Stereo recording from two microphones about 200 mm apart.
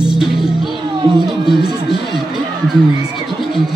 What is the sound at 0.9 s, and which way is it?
Music, 20° right (ahead or behind).